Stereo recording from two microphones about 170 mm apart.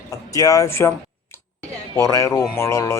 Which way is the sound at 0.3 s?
20° left (ahead or behind).